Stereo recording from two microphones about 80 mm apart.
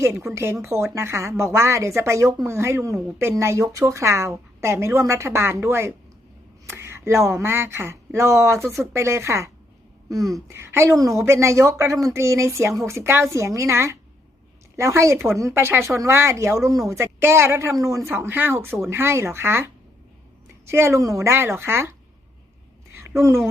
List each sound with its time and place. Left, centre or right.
0.3 s a woman's voice: right
10.1 s speech: right
10.5 s a woman's voice: right
10.9 s a woman's voice: right
18.2 s a woman's voice: right
23.0 s a sound: right